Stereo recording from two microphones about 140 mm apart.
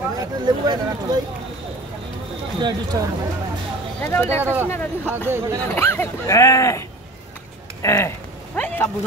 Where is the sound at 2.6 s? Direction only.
30° right (ahead or behind).